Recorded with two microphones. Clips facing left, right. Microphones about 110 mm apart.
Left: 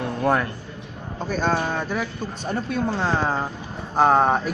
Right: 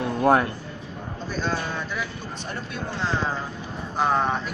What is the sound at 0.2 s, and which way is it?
Speech, 20° right (ahead or behind).